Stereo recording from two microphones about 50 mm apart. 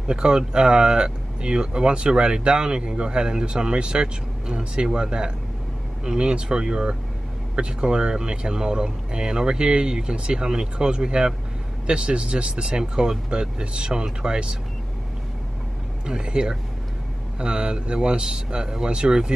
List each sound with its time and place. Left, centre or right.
0.1 s speech: centre
16.1 s speech: centre